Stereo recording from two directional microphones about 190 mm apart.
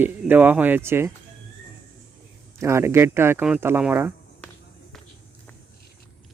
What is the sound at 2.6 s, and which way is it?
Speech, 15° right (ahead or behind).